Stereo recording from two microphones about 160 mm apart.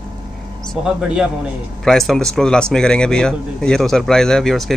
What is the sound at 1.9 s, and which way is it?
A man's voice, 5° left (ahead or behind).